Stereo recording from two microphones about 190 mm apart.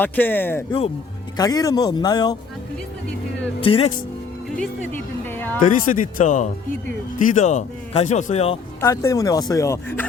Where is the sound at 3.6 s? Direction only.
30° left (ahead or behind).